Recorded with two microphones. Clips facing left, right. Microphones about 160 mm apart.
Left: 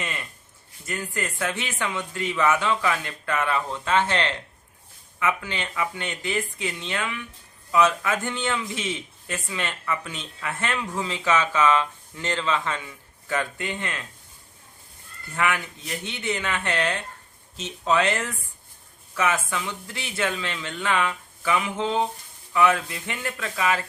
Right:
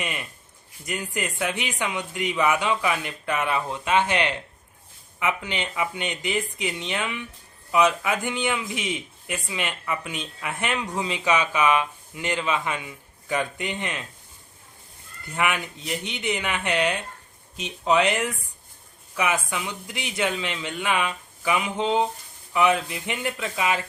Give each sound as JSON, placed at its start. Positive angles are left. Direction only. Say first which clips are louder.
{"t": 0.0, "sound": "a sound", "louder": "right 2 dB", "side_deg": -15}
{"t": 0.9, "sound": "a man's voice", "louder": "right 1 dB", "side_deg": -15}
{"t": 15.4, "sound": "a man's voice", "louder": "even", "side_deg": -20}